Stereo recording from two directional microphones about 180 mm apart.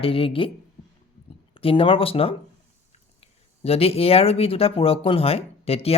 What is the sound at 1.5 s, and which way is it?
Speech, 30° left (ahead or behind).